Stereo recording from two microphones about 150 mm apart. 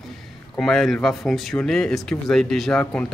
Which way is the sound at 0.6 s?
Centre (ahead or behind).